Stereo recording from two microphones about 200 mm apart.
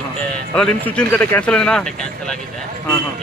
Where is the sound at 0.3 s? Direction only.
5° left (ahead or behind).